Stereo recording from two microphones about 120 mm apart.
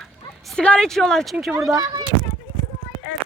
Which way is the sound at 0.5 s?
5° left (ahead or behind).